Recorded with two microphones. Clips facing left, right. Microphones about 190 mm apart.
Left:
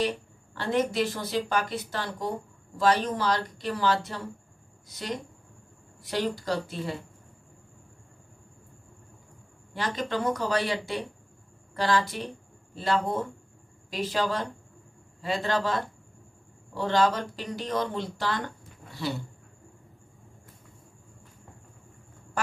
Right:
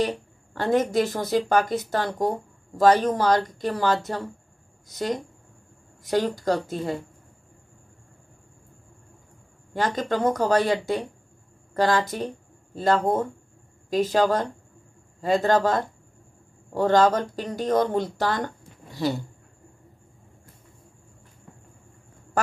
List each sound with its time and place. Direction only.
0.6 s speech: 45° right (ahead or behind)
9.8 s speech: 45° right (ahead or behind)